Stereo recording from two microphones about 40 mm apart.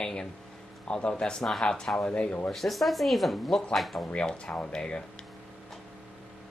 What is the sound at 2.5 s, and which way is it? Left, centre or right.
Speech, centre.